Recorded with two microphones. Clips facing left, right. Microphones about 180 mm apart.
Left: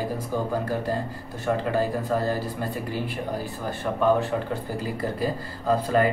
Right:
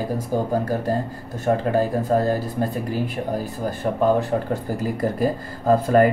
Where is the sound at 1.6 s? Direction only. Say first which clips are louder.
Right 4 dB; 45° right (ahead or behind).